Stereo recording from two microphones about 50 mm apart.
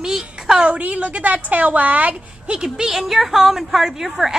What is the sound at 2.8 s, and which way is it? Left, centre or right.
Speech, centre.